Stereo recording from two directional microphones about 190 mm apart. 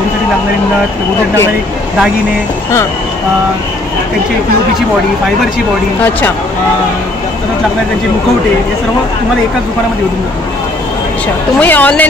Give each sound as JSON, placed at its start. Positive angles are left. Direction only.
{"t": 11.6, "sound": "speech", "side_deg": 10}